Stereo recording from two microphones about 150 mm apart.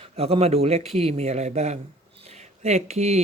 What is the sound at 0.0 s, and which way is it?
Speech, 45° right (ahead or behind).